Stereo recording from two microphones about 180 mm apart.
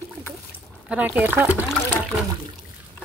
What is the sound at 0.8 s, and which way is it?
Speech, 10° right (ahead or behind).